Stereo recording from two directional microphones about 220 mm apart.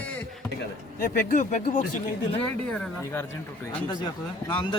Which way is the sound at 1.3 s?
35° left (ahead or behind).